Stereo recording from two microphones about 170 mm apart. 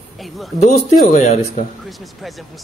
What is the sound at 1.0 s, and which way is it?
Speech, 45° left (ahead or behind).